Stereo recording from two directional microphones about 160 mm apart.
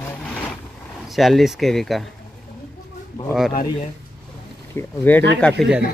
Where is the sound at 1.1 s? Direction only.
Centre (ahead or behind).